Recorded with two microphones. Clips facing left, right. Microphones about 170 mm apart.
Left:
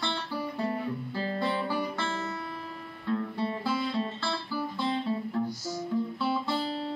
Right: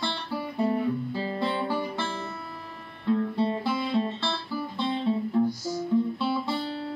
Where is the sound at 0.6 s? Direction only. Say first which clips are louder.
Right 6 dB; 15° right (ahead or behind).